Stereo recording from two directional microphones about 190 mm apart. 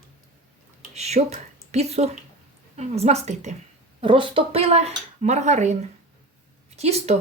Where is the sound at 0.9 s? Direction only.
35° right (ahead or behind).